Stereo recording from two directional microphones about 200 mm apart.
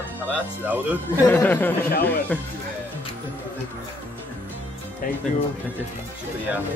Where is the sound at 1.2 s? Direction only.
10° left (ahead or behind).